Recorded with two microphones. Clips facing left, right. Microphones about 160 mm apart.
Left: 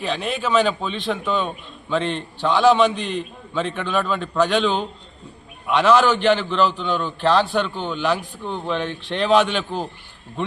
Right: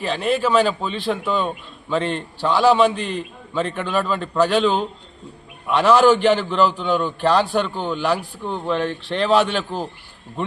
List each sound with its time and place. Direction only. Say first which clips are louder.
0.0 s a man's voice: right 4 dB; centre (ahead or behind)